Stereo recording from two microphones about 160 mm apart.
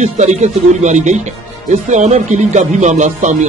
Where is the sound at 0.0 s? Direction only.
45° right (ahead or behind).